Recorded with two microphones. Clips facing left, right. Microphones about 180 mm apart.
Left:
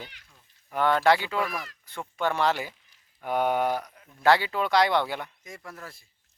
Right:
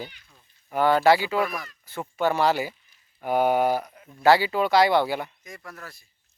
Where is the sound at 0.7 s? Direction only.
5° right (ahead or behind).